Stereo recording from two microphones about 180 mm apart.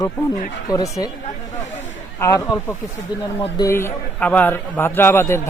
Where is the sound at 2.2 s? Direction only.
20° left (ahead or behind).